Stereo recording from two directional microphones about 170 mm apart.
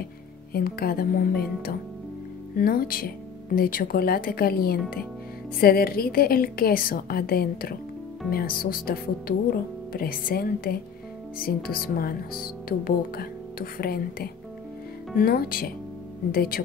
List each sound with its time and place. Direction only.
0.5 s speech: 60° left (ahead or behind)